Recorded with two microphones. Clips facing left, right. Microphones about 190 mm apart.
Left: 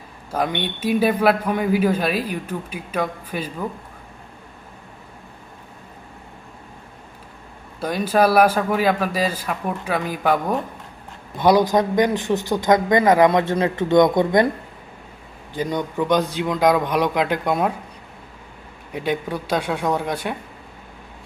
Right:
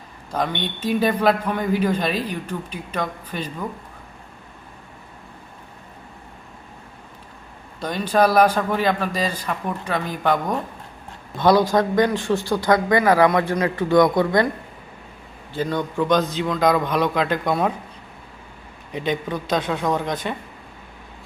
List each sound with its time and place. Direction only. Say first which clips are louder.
0.3 s a man's voice: left 1 dB; 10° left (ahead or behind)
7.8 s a man's voice: left 1 dB; 5° left (ahead or behind)
15.5 s a man's voice: even; 15° left (ahead or behind)
18.9 s a man's voice: even; 10° left (ahead or behind)